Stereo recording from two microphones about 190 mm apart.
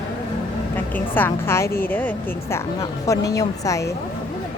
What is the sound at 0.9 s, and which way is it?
A woman's voice, 10° left (ahead or behind).